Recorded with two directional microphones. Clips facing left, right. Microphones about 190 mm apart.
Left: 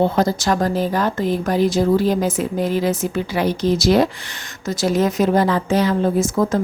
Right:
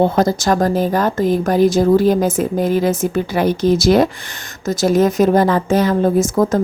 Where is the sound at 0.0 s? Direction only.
45° right (ahead or behind).